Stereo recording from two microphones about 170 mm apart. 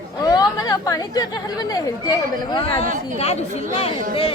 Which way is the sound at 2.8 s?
50° right (ahead or behind).